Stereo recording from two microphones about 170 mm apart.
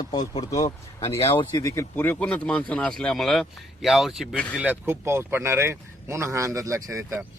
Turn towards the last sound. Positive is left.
turn(degrees=-15)  # may be behind; listen again after turning